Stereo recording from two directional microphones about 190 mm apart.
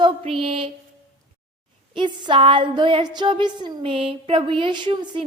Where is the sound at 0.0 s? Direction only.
30° right (ahead or behind).